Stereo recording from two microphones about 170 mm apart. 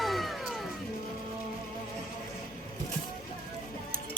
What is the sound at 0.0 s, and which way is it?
Music, centre (ahead or behind).